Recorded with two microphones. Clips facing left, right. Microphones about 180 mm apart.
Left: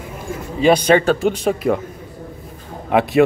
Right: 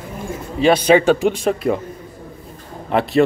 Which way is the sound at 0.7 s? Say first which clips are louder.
Right 1 dB; 5° right (ahead or behind).